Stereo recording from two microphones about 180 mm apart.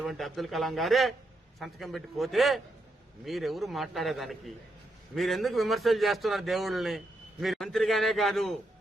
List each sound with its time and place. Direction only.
0.0 s a man's voice: centre (ahead or behind)